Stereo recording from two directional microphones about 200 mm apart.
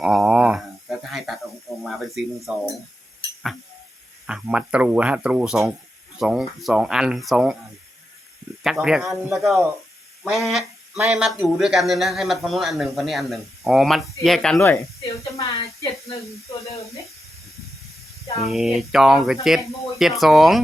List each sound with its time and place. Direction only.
0.0 s a sound: centre (ahead or behind)
1.8 s speech: centre (ahead or behind)
4.3 s speech: 5° right (ahead or behind)
8.6 s speech: centre (ahead or behind)
14.6 s speech: 10° left (ahead or behind)
15.2 s a sound: 30° left (ahead or behind)
15.6 s speech: 15° left (ahead or behind)
18.4 s speech: centre (ahead or behind)